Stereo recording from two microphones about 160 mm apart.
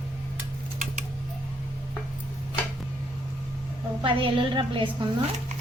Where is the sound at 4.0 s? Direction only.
30° right (ahead or behind).